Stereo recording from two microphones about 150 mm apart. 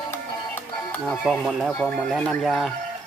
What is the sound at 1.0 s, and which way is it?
Speech, centre (ahead or behind).